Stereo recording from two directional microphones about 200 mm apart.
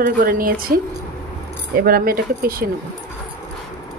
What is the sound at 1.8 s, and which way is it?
Speech, 45° right (ahead or behind).